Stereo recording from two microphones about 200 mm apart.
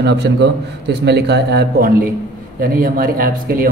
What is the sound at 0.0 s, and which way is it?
A man's voice, 60° right (ahead or behind).